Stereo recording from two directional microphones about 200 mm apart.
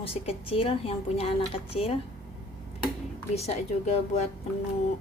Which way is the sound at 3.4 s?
30° left (ahead or behind).